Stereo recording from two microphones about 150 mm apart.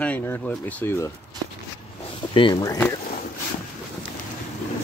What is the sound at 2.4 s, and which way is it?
Speech, 30° left (ahead or behind).